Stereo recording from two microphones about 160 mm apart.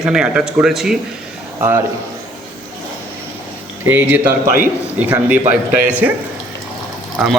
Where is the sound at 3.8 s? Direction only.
10° right (ahead or behind).